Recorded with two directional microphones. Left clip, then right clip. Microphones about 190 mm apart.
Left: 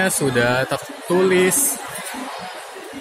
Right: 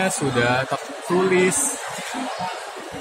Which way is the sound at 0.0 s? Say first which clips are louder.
Left 2 dB; 15° left (ahead or behind).